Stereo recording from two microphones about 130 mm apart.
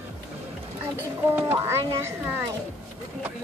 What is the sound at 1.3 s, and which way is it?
Speech, 15° right (ahead or behind).